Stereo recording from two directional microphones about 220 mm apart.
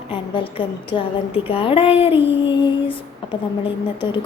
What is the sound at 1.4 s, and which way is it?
A woman's voice, 25° left (ahead or behind).